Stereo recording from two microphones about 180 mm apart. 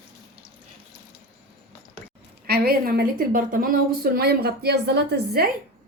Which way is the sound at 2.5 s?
60° right (ahead or behind).